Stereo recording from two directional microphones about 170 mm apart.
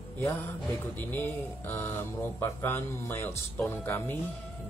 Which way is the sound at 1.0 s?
10° left (ahead or behind).